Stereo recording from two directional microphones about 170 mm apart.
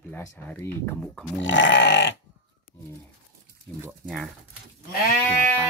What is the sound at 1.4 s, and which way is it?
Goat, 90° left.